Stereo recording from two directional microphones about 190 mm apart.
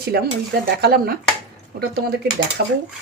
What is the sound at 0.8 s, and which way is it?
Dishes, 55° right (ahead or behind).